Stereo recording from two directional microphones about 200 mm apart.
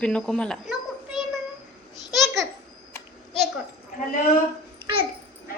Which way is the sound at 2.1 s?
Centre (ahead or behind).